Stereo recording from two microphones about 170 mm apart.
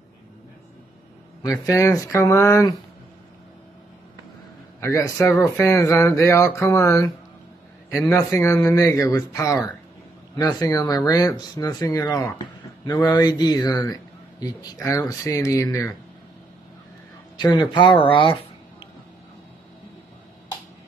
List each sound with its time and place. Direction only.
1.6 s speech: 20° left (ahead or behind)
4.7 s speech: 15° left (ahead or behind)
17.4 s speech: 25° left (ahead or behind)